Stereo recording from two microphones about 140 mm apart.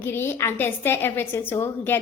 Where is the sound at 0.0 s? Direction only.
15° left (ahead or behind).